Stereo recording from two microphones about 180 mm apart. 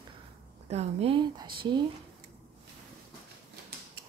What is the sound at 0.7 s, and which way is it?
Speech, 35° right (ahead or behind).